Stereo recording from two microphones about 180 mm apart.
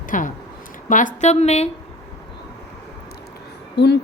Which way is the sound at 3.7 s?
70° left (ahead or behind).